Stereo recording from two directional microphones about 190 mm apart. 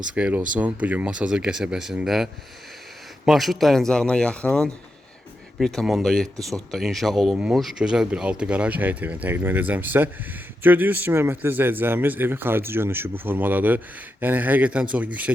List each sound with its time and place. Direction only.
0.1 s speech: 5° right (ahead or behind)